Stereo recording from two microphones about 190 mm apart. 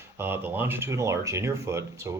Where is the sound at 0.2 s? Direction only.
10° right (ahead or behind).